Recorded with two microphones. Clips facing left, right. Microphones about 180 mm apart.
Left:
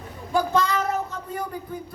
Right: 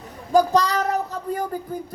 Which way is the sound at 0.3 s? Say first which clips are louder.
Right 4 dB; 40° right (ahead or behind).